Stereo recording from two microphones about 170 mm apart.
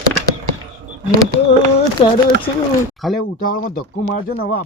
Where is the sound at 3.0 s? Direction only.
Centre (ahead or behind).